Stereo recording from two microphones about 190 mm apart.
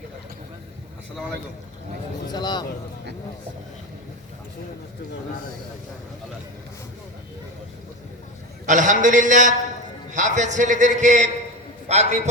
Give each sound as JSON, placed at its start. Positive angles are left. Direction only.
{"t": 2.3, "sound": "speech", "side_deg": 20}
{"t": 8.6, "sound": "a man's voice", "side_deg": -40}